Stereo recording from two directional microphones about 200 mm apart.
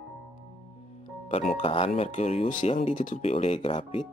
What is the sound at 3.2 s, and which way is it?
Speech, 30° left (ahead or behind).